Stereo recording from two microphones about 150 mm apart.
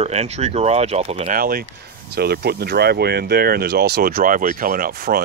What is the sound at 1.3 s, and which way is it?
Speech, 70° right (ahead or behind).